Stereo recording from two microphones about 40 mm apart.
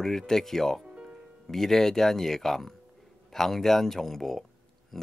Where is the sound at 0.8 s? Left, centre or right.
Right.